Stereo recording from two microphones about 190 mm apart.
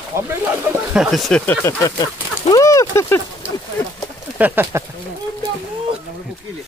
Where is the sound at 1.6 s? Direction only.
20° left (ahead or behind).